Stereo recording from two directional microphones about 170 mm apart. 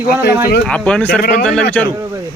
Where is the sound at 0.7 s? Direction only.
5° left (ahead or behind).